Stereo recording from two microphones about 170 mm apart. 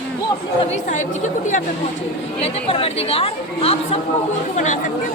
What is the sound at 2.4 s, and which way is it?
Speech, 35° left (ahead or behind).